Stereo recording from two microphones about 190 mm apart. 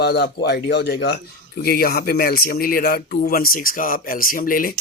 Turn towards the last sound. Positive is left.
turn(degrees=45)  # may be behind; listen again after turning